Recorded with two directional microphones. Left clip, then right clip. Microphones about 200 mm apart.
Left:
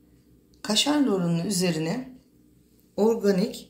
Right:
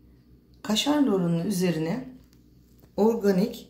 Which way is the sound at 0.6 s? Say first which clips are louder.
Left 1 dB; 5° left (ahead or behind).